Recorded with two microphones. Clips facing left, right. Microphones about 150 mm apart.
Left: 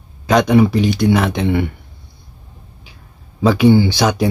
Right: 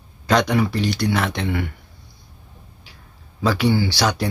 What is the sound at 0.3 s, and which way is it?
Speech, 20° left (ahead or behind).